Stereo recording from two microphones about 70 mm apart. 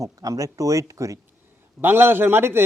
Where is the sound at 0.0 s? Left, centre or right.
Right.